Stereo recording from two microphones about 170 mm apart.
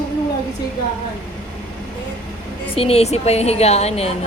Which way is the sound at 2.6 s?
35° left (ahead or behind).